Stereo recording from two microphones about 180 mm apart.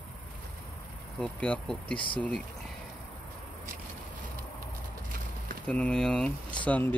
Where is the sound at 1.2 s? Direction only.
5° left (ahead or behind).